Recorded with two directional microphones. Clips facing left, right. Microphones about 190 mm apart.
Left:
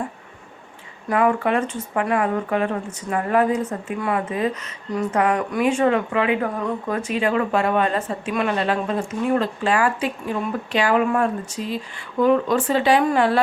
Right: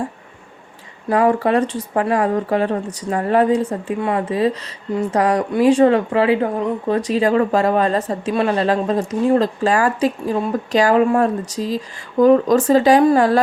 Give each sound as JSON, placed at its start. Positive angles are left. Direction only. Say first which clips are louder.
{"t": 1.1, "sound": "speech", "louder": "right 4 dB", "side_deg": -35}